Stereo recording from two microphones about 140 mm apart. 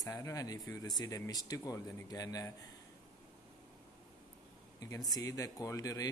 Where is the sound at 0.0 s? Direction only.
25° left (ahead or behind).